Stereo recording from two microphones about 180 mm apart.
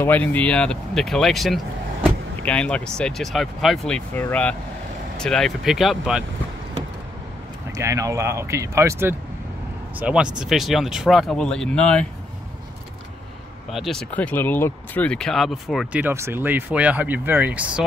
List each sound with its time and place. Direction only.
0.0 s speech: 10° left (ahead or behind)
7.7 s speech: 15° right (ahead or behind); by 12.1 s 5° left (ahead or behind)
13.7 s speech: centre (ahead or behind)